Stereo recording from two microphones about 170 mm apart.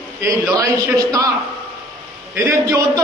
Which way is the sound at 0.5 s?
20° right (ahead or behind).